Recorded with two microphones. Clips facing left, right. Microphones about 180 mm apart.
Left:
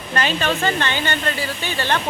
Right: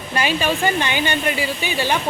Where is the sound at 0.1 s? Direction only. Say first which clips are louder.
Right 1 dB; 10° right (ahead or behind).